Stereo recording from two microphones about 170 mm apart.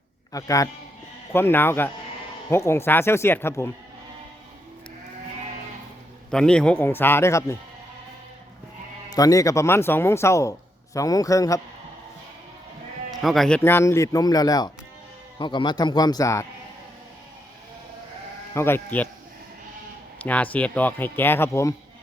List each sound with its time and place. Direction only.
0.3 s speech: 20° left (ahead or behind)
6.3 s speech: 5° left (ahead or behind)
9.0 s speech: 20° left (ahead or behind)
13.2 s speech: centre (ahead or behind)
13.6 s speech: 15° left (ahead or behind)
18.5 s speech: 15° left (ahead or behind)
20.1 s speech: 10° left (ahead or behind)